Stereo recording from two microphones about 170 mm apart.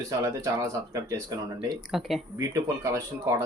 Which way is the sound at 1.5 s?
Centre (ahead or behind).